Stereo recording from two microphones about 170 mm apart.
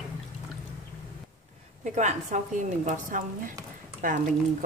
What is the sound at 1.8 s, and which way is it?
Speech, 45° right (ahead or behind).